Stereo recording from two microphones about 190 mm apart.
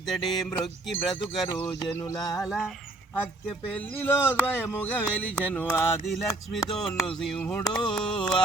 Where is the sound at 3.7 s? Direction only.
10° left (ahead or behind).